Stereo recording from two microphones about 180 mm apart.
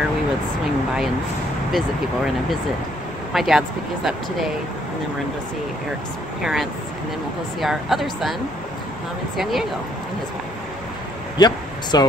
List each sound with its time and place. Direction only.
3.3 s speech: centre (ahead or behind)
6.4 s speech: centre (ahead or behind)
9.4 s speech: centre (ahead or behind)
11.3 s speech: 25° left (ahead or behind)